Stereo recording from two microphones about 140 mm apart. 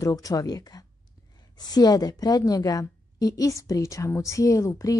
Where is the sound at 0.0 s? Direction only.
25° left (ahead or behind).